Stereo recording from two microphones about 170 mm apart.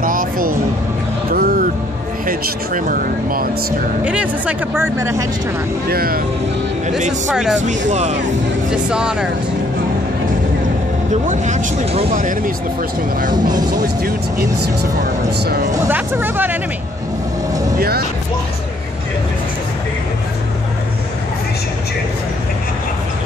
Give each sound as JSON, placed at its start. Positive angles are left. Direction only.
{"t": 0.0, "sound": "a sound", "side_deg": -55}
{"t": 1.3, "sound": "music", "side_deg": -60}
{"t": 2.2, "sound": "speech", "side_deg": -55}
{"t": 4.0, "sound": "speech", "side_deg": -10}
{"t": 5.9, "sound": "speech", "side_deg": -60}
{"t": 7.9, "sound": "speech", "side_deg": -45}
{"t": 8.9, "sound": "speech", "side_deg": -5}
{"t": 11.2, "sound": "speech", "side_deg": -45}
{"t": 12.2, "sound": "speech", "side_deg": -55}
{"t": 13.3, "sound": "speech", "side_deg": -25}
{"t": 14.0, "sound": "speech", "side_deg": -70}
{"t": 15.7, "sound": "speech", "side_deg": -15}
{"t": 17.7, "sound": "speech", "side_deg": -65}